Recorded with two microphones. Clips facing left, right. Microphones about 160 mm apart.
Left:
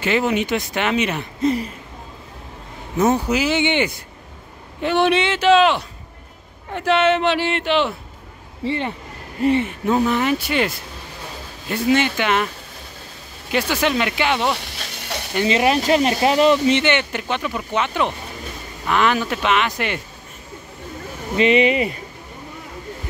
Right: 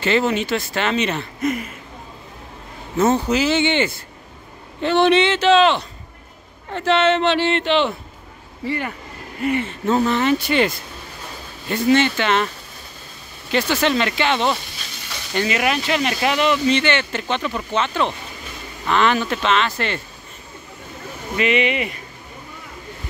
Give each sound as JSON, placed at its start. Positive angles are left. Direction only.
{"t": 0.0, "sound": "speech", "side_deg": 10}
{"t": 1.4, "sound": "a sound", "side_deg": 30}
{"t": 3.0, "sound": "speech", "side_deg": 10}
{"t": 8.6, "sound": "speech", "side_deg": 25}
{"t": 9.7, "sound": "speech", "side_deg": 10}
{"t": 13.5, "sound": "speech", "side_deg": 10}
{"t": 14.8, "sound": "hiss", "side_deg": 60}
{"t": 15.4, "sound": "speech", "side_deg": 30}
{"t": 16.6, "sound": "speech", "side_deg": 20}
{"t": 21.4, "sound": "speech", "side_deg": 35}